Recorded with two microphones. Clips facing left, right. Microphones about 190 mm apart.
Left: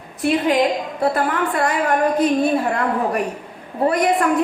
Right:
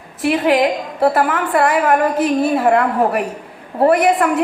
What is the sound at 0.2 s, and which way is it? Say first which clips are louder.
A woman's voice: right 2 dB; 65° right (ahead or behind).